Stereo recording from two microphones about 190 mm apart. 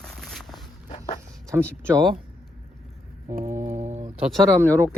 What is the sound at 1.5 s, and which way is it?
Speech, 15° right (ahead or behind).